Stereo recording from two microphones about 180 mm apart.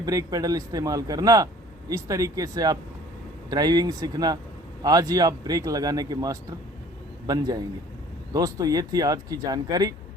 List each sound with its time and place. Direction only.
0.0 s speech: 20° right (ahead or behind)